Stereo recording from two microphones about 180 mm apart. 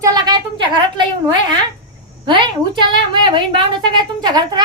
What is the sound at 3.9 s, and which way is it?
Speech, 25° right (ahead or behind).